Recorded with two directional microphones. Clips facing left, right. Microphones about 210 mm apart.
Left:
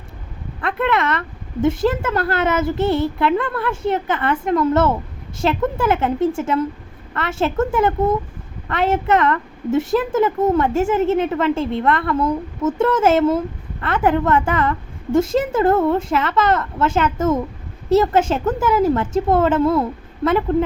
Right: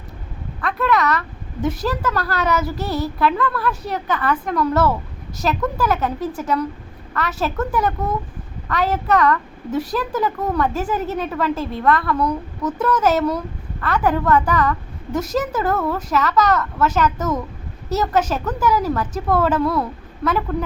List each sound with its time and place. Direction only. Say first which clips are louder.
0.6 s a woman's voice: even; 25° left (ahead or behind)